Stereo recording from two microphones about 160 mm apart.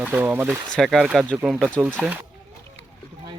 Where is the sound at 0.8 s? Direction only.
Centre (ahead or behind).